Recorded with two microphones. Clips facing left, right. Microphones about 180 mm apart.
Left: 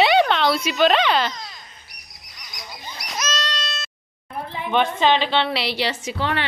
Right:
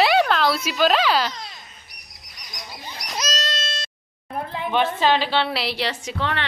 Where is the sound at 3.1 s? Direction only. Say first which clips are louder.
Even; 40° right (ahead or behind).